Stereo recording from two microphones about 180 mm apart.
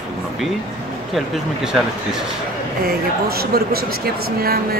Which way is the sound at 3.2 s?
60° right (ahead or behind).